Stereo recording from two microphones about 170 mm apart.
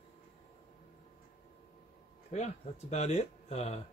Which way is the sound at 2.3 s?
40° left (ahead or behind).